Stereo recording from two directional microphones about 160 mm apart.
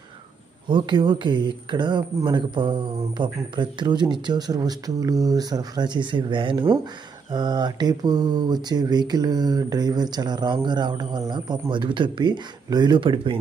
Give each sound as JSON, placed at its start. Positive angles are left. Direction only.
{"t": 0.7, "sound": "speech", "side_deg": -30}